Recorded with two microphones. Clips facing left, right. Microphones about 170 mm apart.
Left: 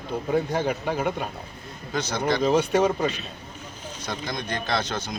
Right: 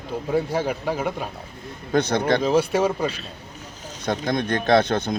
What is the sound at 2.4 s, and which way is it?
Speech, 5° right (ahead or behind).